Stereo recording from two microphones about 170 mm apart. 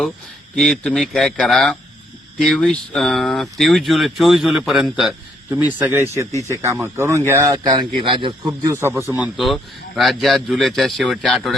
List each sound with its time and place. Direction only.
0.5 s a man's voice: 5° left (ahead or behind); by 9.0 s 15° right (ahead or behind)
9.1 s speech: 5° right (ahead or behind)